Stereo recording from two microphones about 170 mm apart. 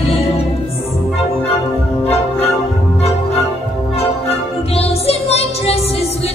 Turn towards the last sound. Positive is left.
turn(degrees=35)  # may be behind; listen again after turning